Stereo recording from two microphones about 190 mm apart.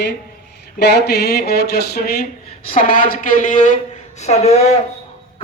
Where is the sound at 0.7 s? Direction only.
60° left (ahead or behind).